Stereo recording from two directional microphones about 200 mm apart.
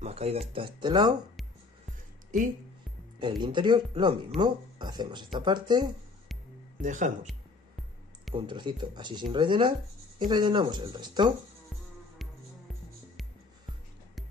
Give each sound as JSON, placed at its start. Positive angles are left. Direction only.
{"t": 0.0, "sound": "speech", "side_deg": -30}
{"t": 3.2, "sound": "speech", "side_deg": -20}
{"t": 6.8, "sound": "speech", "side_deg": -40}
{"t": 8.4, "sound": "speech", "side_deg": -25}